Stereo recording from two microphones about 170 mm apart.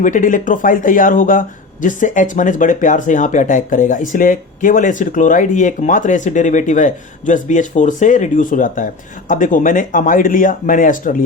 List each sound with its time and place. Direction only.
0.0 s speech: 50° left (ahead or behind)